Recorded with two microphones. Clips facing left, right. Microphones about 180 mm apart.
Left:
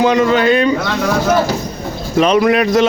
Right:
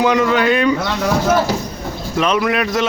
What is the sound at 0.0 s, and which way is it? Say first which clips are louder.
Speech: left 3 dB; 25° left (ahead or behind).